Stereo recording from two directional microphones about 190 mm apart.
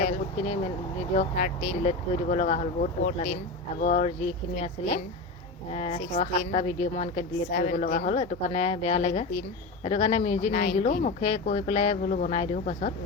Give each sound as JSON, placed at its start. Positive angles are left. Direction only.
{"t": 0.0, "sound": "speech", "side_deg": 40}
{"t": 1.8, "sound": "a woman's voice", "side_deg": 35}
{"t": 5.7, "sound": "a woman's voice", "side_deg": 35}